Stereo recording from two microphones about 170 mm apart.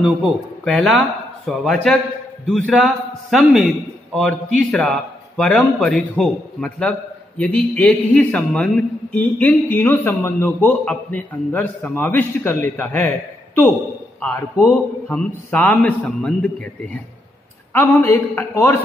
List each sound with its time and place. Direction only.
0.0 s a man's voice: centre (ahead or behind)
15.0 s a man's voice: 10° left (ahead or behind)
18.1 s a man's voice: 15° left (ahead or behind)